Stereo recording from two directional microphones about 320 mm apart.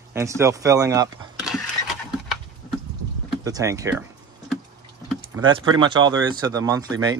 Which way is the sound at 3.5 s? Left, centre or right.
Centre.